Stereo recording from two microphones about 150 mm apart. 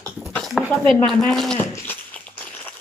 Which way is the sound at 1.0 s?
Centre (ahead or behind).